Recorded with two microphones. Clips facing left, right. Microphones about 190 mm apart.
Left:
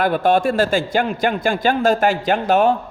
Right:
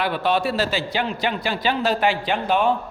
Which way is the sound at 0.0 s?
45° left (ahead or behind).